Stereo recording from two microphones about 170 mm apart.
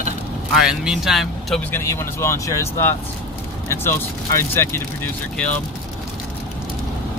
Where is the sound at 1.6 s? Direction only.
15° left (ahead or behind).